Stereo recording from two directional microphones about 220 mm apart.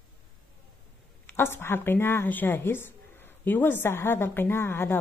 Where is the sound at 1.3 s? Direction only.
10° left (ahead or behind).